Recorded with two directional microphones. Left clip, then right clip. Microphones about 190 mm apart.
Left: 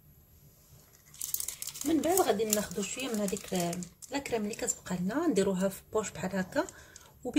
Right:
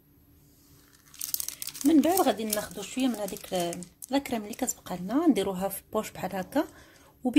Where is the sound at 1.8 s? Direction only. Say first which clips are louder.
Right 5 dB; 45° right (ahead or behind).